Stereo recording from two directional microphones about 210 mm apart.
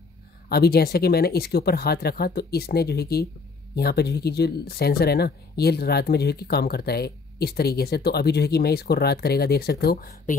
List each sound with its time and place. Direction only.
0.5 s speech: 50° left (ahead or behind)